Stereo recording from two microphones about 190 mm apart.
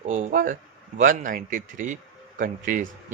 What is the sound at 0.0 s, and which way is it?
A man's voice, 45° right (ahead or behind).